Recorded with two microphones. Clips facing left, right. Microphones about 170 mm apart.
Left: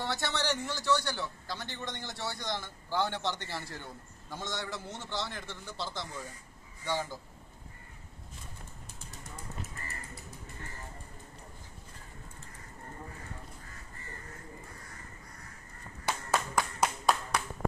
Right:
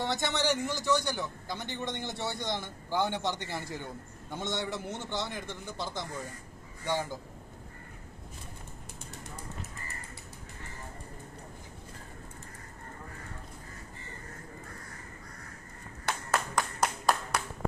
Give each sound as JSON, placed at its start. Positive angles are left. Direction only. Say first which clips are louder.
{"t": 0.0, "sound": "a man's voice", "louder": "right 3 dB", "side_deg": -15}
{"t": 16.1, "sound": "clapping", "louder": "even", "side_deg": 5}